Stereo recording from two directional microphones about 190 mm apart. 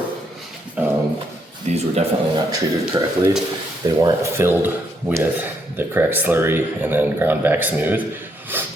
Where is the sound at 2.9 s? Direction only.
20° right (ahead or behind).